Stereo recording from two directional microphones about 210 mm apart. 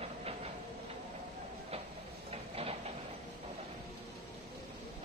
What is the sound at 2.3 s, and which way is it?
Train, 30° right (ahead or behind).